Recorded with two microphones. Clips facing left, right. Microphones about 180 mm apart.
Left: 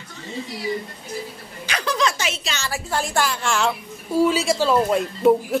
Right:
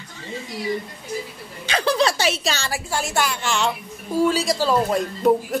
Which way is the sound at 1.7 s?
30° right (ahead or behind).